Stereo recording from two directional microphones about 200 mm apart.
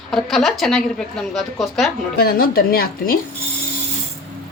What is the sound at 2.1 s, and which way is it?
Speech, 50° left (ahead or behind).